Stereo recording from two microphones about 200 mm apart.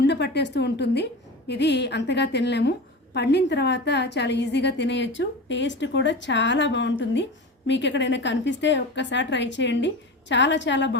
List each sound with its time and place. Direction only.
0.1 s a woman's voice: 60° left (ahead or behind)